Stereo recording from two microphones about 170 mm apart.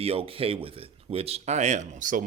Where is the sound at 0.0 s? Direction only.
35° right (ahead or behind).